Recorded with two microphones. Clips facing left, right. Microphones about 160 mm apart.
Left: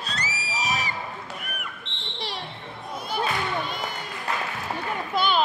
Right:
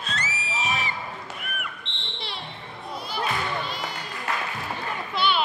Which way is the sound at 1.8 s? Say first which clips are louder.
Right 1 dB; centre (ahead or behind).